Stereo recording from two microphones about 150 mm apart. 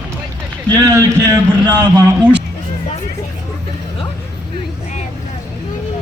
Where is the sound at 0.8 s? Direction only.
20° right (ahead or behind).